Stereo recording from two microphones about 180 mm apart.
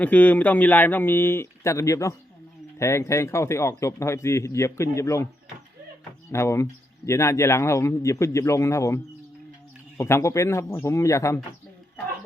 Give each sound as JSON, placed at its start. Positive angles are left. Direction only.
{"t": 0.0, "sound": "speech", "side_deg": 10}
{"t": 6.3, "sound": "speech", "side_deg": 15}
{"t": 10.0, "sound": "speech", "side_deg": 15}